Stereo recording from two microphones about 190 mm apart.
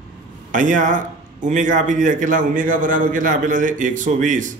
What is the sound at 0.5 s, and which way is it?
A man's voice, 40° right (ahead or behind).